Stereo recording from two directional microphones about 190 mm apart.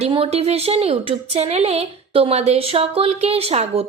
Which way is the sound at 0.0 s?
30° right (ahead or behind).